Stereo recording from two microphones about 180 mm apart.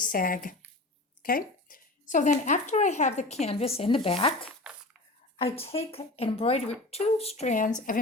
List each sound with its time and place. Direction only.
0.0 s speech: 50° left (ahead or behind); by 4.5 s 30° left (ahead or behind)
4.6 s crushing: 5° right (ahead or behind)
5.4 s speech: 30° left (ahead or behind)